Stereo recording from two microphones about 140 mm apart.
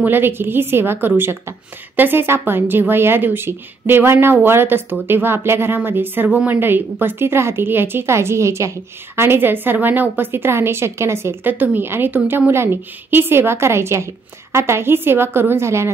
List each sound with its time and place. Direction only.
0.0 s a woman's voice: 15° right (ahead or behind)